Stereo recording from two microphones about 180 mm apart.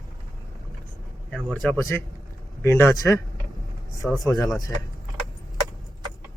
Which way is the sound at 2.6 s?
15° left (ahead or behind).